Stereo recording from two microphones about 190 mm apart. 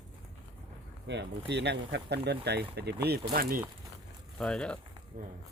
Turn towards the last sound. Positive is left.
turn(degrees=-45)  # may be behind; listen again after turning